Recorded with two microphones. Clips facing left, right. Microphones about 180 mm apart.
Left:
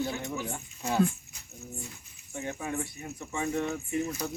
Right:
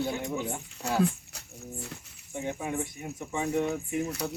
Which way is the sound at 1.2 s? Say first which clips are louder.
Right 2 dB; 70° right (ahead or behind).